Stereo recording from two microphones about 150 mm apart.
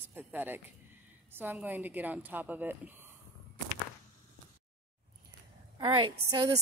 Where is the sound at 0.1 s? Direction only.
15° right (ahead or behind).